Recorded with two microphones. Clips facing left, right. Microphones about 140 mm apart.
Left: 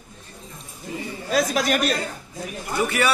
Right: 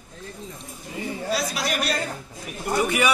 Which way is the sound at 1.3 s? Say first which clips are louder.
Left 7 dB; 50° left (ahead or behind).